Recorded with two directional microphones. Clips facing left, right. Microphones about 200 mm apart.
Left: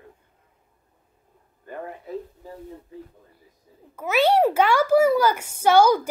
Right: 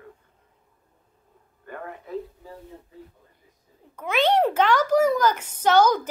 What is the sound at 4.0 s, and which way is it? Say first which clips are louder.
A child's voice: left 2 dB; 5° left (ahead or behind).